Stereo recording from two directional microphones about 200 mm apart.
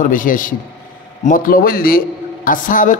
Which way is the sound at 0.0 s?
45° left (ahead or behind).